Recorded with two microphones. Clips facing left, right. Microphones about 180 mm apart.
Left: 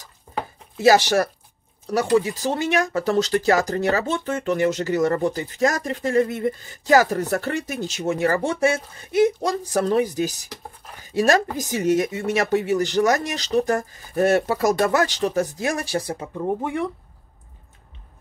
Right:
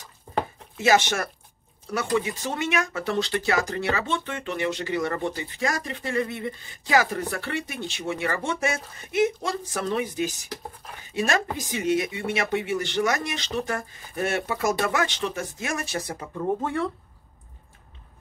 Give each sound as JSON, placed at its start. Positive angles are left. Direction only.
{"t": 0.7, "sound": "speech", "side_deg": 35}
{"t": 16.3, "sound": "speech", "side_deg": 15}